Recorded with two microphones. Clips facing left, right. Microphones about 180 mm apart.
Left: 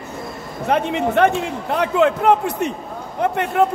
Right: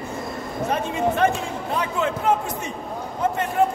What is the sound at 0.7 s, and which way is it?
A man's voice, 65° left (ahead or behind).